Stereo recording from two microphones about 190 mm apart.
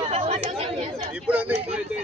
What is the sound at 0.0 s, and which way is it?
Chatter, 30° right (ahead or behind).